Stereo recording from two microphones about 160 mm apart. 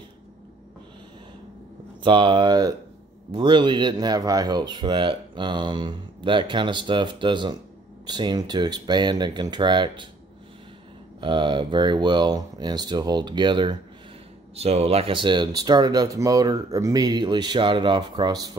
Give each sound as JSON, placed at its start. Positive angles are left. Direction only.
{"t": 2.0, "sound": "speech", "side_deg": -30}
{"t": 11.1, "sound": "speech", "side_deg": -30}
{"t": 14.5, "sound": "speech", "side_deg": -40}